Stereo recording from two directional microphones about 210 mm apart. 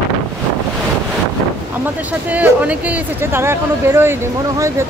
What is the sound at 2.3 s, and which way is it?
Speech, 5° right (ahead or behind).